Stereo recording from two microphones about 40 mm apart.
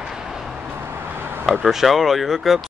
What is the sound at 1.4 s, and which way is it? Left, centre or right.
Speech, centre.